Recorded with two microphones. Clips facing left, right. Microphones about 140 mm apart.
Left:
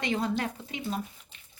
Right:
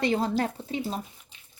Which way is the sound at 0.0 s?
35° right (ahead or behind).